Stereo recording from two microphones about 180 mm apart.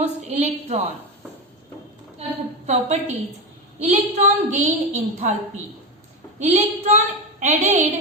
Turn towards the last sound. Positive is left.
turn(degrees=-40)  # may be behind; listen again after turning